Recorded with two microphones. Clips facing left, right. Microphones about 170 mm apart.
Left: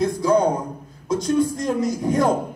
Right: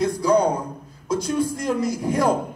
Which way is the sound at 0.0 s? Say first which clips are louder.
Even; centre (ahead or behind).